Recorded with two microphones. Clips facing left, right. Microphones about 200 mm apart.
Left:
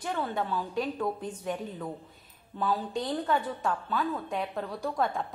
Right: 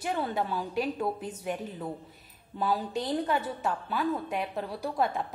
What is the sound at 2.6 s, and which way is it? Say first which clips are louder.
A woman's voice: even; 10° right (ahead or behind).